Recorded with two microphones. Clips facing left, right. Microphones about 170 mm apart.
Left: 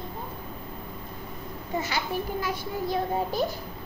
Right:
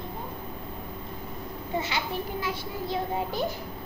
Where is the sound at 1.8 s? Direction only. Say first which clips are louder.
Left 1 dB; 25° right (ahead or behind).